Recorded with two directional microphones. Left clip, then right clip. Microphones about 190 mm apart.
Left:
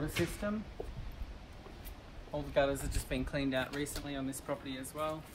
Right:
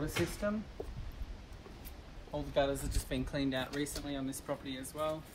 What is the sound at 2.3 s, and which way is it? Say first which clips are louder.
Speech: left 1 dB; 10° left (ahead or behind).